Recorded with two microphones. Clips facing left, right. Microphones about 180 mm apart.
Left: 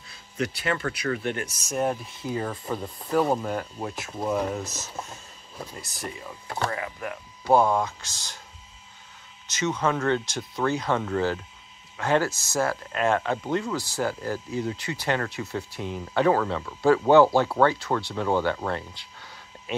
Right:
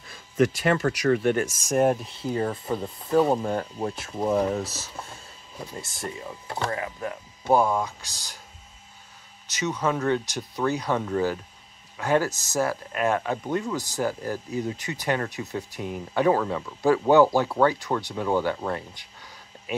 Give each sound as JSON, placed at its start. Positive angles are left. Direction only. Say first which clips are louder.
{"t": 0.1, "sound": "speech", "louder": "right 8 dB", "side_deg": -45}
{"t": 2.3, "sound": "speech", "louder": "right 3 dB", "side_deg": -30}
{"t": 7.5, "sound": "speech", "louder": "left 1 dB", "side_deg": -5}
{"t": 9.8, "sound": "speech", "louder": "right 1 dB", "side_deg": -15}